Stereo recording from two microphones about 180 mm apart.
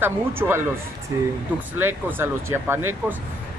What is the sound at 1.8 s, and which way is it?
Speech, 10° right (ahead or behind).